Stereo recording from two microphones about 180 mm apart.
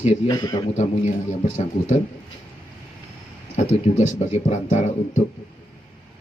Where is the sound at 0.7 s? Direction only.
40° left (ahead or behind).